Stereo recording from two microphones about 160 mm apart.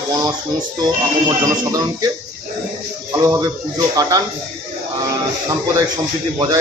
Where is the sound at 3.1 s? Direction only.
20° right (ahead or behind).